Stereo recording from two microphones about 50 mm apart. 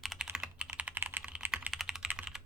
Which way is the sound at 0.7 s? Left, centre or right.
Right.